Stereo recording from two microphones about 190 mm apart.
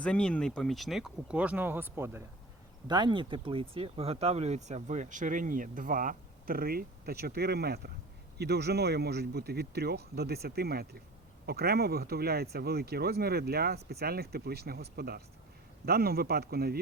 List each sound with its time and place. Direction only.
0.0 s speech: 5° left (ahead or behind); by 2.2 s 10° right (ahead or behind)
2.8 s speech: 25° right (ahead or behind); by 16.8 s 55° right (ahead or behind)